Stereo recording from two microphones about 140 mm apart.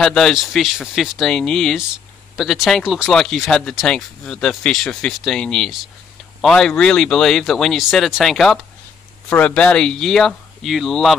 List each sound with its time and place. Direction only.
0.0 s speech: 5° left (ahead or behind)